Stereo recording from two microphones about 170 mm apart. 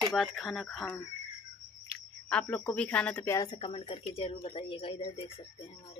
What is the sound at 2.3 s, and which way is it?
Speech, 10° left (ahead or behind).